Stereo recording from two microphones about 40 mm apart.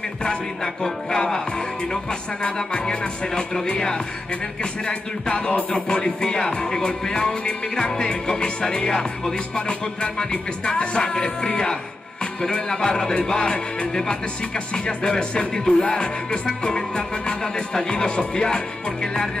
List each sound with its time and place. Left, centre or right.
0.8 s music: centre
2.4 s music: left
5.7 s music: centre